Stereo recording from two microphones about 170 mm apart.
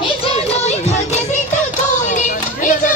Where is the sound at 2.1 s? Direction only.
50° left (ahead or behind).